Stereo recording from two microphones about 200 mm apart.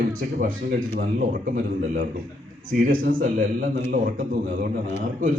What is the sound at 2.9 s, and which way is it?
Speech, 45° right (ahead or behind).